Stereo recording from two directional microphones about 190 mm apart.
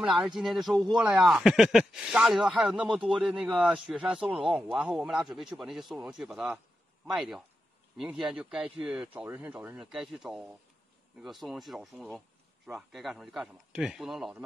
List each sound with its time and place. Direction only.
0.0 s speech: centre (ahead or behind)